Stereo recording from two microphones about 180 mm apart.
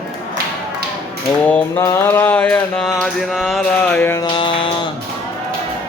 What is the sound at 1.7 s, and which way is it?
Music, 15° left (ahead or behind).